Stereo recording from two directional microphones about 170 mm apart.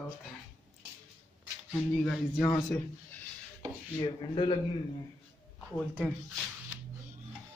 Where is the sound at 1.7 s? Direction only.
Centre (ahead or behind).